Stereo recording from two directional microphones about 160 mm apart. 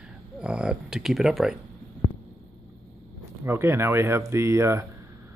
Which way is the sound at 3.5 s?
15° right (ahead or behind).